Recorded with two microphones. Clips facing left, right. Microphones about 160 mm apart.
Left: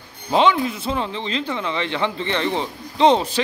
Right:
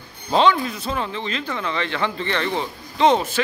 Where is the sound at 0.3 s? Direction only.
20° left (ahead or behind).